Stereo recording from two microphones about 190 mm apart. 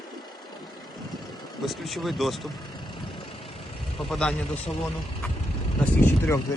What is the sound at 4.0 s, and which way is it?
Speech, 5° left (ahead or behind).